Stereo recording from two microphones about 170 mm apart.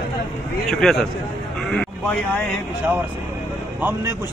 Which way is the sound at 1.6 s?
5° left (ahead or behind).